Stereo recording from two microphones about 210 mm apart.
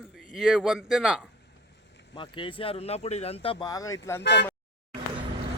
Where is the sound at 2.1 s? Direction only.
25° left (ahead or behind).